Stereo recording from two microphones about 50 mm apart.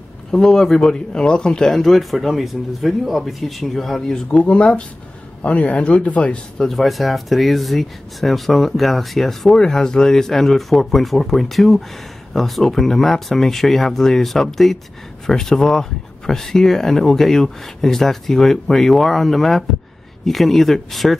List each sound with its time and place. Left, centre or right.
0.3 s speech: centre
1.7 s speech: centre
4.1 s speech: left
6.6 s speech: centre